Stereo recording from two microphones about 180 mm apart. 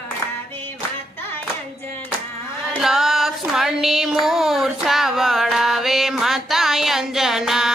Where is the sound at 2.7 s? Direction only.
Centre (ahead or behind).